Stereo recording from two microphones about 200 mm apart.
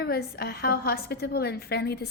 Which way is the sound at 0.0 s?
55° left (ahead or behind).